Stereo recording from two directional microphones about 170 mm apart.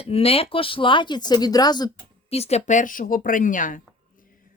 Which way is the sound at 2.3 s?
40° left (ahead or behind).